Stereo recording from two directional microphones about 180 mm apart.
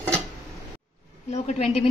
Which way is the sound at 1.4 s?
35° left (ahead or behind).